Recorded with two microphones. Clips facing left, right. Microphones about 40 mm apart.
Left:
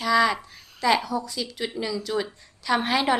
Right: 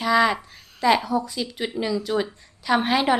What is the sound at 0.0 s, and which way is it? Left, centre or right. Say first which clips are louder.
Speech: right 1 dB; centre.